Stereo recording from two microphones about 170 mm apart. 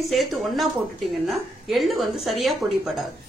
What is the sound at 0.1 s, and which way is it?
A woman's voice, centre (ahead or behind).